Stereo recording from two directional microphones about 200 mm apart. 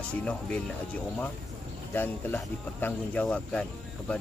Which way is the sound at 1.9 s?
10° left (ahead or behind).